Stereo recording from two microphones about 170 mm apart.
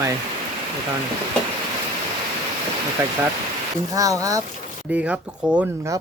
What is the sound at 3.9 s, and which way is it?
Speech, 20° right (ahead or behind).